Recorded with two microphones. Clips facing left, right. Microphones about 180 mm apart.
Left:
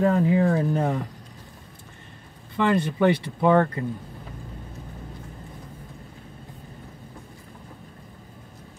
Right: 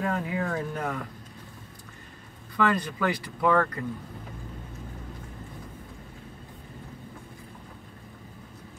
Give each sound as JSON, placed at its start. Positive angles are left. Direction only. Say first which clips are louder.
{"t": 0.0, "sound": "speech", "louder": "left 9 dB", "side_deg": 30}
{"t": 2.5, "sound": "speech", "louder": "left 3 dB", "side_deg": 25}